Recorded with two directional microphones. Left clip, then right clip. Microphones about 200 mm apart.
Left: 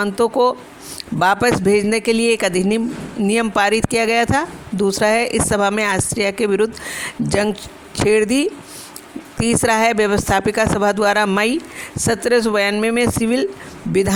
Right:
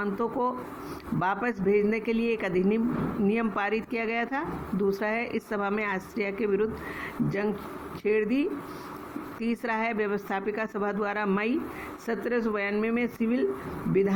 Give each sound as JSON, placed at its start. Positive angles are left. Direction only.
{"t": 0.0, "sound": "speech", "side_deg": 60}